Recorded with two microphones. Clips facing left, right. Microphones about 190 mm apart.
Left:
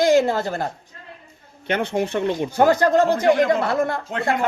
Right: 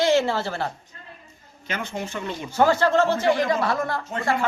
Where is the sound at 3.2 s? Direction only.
50° left (ahead or behind).